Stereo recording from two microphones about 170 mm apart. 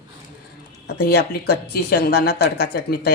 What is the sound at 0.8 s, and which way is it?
A woman's voice, 65° left (ahead or behind).